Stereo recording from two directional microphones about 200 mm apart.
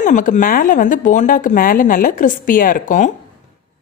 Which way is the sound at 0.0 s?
40° left (ahead or behind).